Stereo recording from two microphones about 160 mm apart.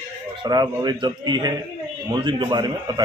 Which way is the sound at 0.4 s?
25° right (ahead or behind).